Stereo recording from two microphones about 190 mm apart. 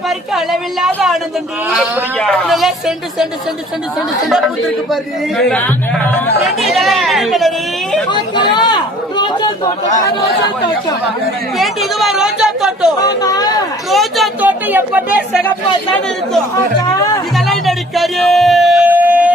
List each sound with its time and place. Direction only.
0.3 s speech: centre (ahead or behind)
2.1 s speech: centre (ahead or behind)
5.4 s speech: 5° left (ahead or behind)
6.4 s chatter: centre (ahead or behind)
8.5 s a sound: 20° left (ahead or behind)
11.5 s chatter: centre (ahead or behind)
13.0 s a sound: 20° left (ahead or behind)
13.9 s a sound: centre (ahead or behind)
16.8 s speech: 20° left (ahead or behind)
17.3 s music: centre (ahead or behind)